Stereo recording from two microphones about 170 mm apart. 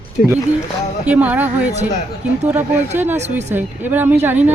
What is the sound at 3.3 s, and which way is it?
Speech, 10° right (ahead or behind).